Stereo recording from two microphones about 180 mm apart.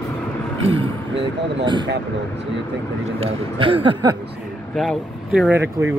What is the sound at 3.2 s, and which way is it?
A man's voice, 30° right (ahead or behind).